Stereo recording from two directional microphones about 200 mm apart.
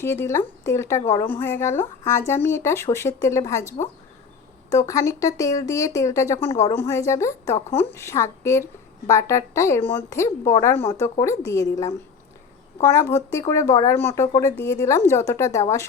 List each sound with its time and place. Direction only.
0.0 s speech: 10° left (ahead or behind)
12.8 s speech: 15° left (ahead or behind)